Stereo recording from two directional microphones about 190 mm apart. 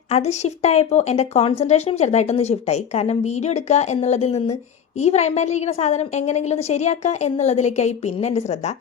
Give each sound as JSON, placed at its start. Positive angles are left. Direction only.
{"t": 0.1, "sound": "speech", "side_deg": 35}